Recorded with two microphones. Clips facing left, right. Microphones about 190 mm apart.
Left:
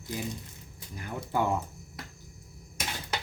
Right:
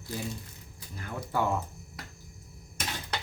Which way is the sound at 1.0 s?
15° left (ahead or behind).